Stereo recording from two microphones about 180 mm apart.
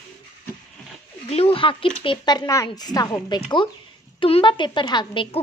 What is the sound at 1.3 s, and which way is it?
A woman's voice, 30° left (ahead or behind).